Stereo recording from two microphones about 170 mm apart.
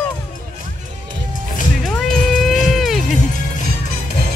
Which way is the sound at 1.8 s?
Centre (ahead or behind).